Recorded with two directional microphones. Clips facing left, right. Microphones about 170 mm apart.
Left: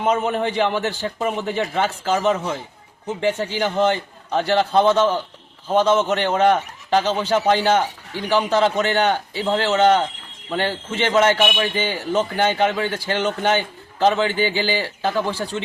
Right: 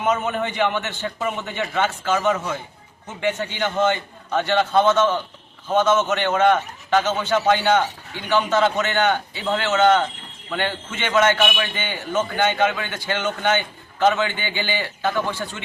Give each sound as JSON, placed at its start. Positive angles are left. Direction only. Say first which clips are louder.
{"t": 0.0, "sound": "a man's voice", "louder": "left 2 dB", "side_deg": 30}